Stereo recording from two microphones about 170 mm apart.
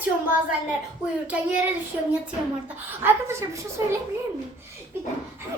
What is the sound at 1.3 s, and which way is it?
Speech, 10° right (ahead or behind).